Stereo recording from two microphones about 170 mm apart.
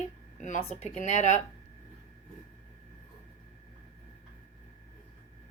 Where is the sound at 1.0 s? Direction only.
45° left (ahead or behind).